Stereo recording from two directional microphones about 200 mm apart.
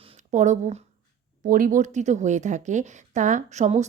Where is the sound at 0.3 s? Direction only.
35° right (ahead or behind).